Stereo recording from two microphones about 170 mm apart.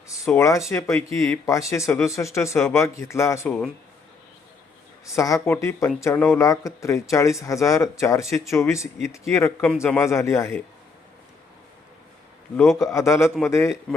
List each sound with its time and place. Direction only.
0.3 s speech: 20° left (ahead or behind)
5.0 s speech: 20° left (ahead or behind)
12.9 s speech: 15° left (ahead or behind)